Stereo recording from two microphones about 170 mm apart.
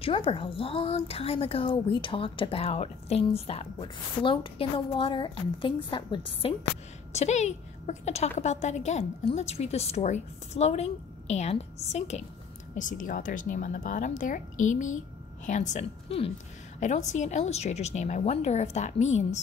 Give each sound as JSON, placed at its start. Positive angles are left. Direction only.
{"t": 0.0, "sound": "a woman's voice", "side_deg": 30}
{"t": 7.1, "sound": "a woman's voice", "side_deg": 40}